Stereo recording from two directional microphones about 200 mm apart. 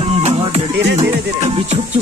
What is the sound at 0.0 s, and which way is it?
Music, 30° right (ahead or behind).